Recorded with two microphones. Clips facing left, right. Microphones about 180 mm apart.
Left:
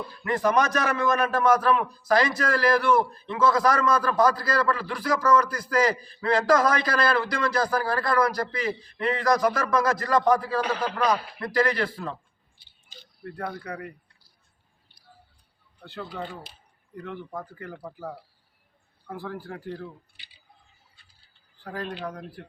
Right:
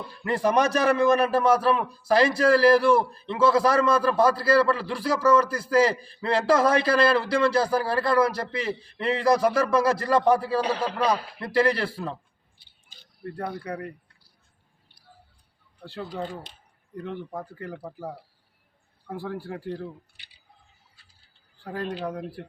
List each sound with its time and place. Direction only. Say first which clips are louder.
0.3 s a man's voice: right 1 dB; 30° right (ahead or behind)
13.7 s a man's voice: right 3 dB; 30° right (ahead or behind)
15.8 s a man's voice: right 2 dB; 30° right (ahead or behind)
16.9 s speech: right 3 dB; 30° right (ahead or behind)
19.3 s a man's voice: right 4 dB; 30° right (ahead or behind)
22.0 s speech: right 4 dB; 10° right (ahead or behind)